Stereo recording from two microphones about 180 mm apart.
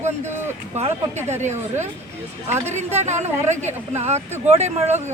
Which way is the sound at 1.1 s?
15° right (ahead or behind).